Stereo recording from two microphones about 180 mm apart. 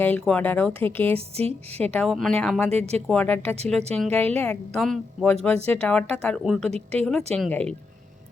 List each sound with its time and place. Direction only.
0.0 s a woman's voice: 10° left (ahead or behind)
1.1 s a woman's voice: 35° right (ahead or behind)
1.8 s a woman's voice: 5° left (ahead or behind)
2.6 s a woman's voice: 35° right (ahead or behind)
3.1 s a woman's voice: 10° left (ahead or behind)